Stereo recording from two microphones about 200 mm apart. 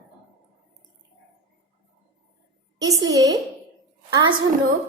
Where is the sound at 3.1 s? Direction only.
15° right (ahead or behind).